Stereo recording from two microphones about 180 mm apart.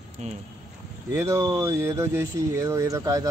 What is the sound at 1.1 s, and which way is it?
Speech, 15° right (ahead or behind).